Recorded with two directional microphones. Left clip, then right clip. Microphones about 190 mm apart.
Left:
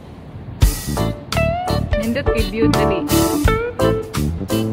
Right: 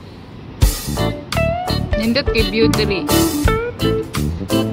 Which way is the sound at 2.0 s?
20° right (ahead or behind).